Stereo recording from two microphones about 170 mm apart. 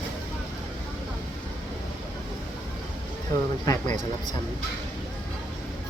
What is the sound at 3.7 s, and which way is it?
Speech, 20° left (ahead or behind).